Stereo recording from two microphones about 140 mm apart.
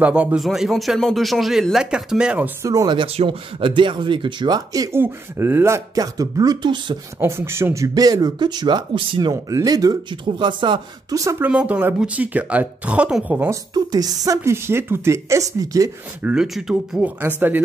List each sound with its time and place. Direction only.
0.0 s speech: 10° right (ahead or behind)
2.6 s speech: 25° right (ahead or behind)
3.1 s speech: 45° right (ahead or behind)
7.2 s speech: 20° right (ahead or behind)
13.5 s speech: 25° right (ahead or behind)
16.2 s speech: 5° right (ahead or behind)